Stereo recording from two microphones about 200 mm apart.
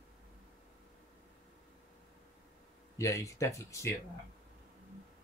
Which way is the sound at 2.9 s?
15° left (ahead or behind).